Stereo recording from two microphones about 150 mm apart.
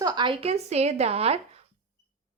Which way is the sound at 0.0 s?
30° right (ahead or behind).